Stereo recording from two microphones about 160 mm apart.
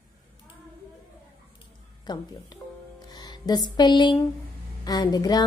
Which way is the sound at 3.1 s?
25° left (ahead or behind).